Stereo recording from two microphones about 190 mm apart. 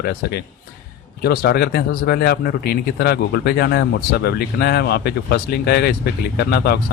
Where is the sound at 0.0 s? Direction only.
55° left (ahead or behind).